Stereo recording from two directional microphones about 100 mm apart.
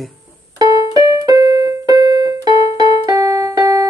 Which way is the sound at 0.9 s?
40° right (ahead or behind).